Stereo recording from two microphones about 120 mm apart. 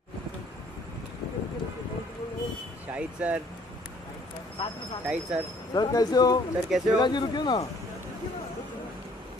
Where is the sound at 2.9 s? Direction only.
10° right (ahead or behind).